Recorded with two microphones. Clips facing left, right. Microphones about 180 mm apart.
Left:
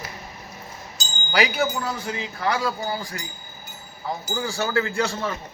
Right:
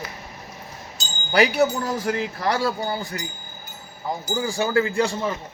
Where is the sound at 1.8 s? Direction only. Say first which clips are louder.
Right 5 dB; 45° right (ahead or behind).